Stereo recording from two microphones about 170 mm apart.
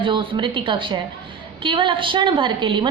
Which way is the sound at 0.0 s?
30° right (ahead or behind).